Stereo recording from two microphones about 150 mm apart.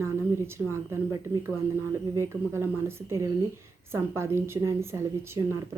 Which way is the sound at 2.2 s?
15° right (ahead or behind).